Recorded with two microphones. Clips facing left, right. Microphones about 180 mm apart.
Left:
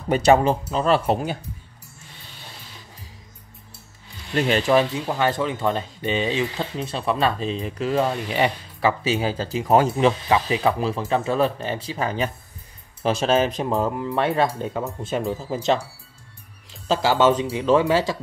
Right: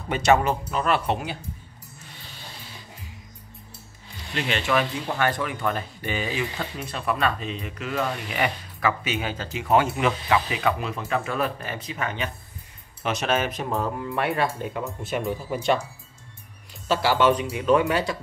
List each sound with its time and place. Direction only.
0.1 s speech: 35° left (ahead or behind)
4.4 s speech: 40° left (ahead or behind)
5.2 s speech: 25° left (ahead or behind)
17.1 s speech: 25° left (ahead or behind)